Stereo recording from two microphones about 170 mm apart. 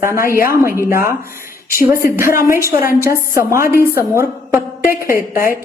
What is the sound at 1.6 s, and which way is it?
Speech, 55° left (ahead or behind).